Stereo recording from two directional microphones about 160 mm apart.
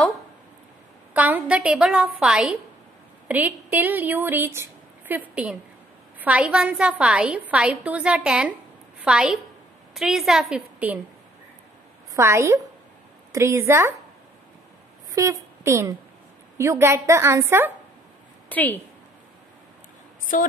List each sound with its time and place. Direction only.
1.1 s a woman's voice: 10° right (ahead or behind)
12.1 s a woman's voice: 15° right (ahead or behind)
15.1 s a woman's voice: 20° right (ahead or behind)
18.5 s a woman's voice: 10° left (ahead or behind)
20.3 s a sound: 55° left (ahead or behind)